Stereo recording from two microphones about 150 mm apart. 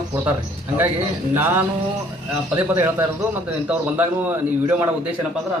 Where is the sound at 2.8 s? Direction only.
15° right (ahead or behind).